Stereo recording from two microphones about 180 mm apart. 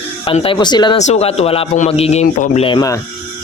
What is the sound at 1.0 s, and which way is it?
A man's voice, 40° left (ahead or behind).